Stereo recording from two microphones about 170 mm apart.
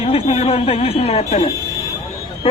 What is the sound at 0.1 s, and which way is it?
A man's voice, 35° left (ahead or behind).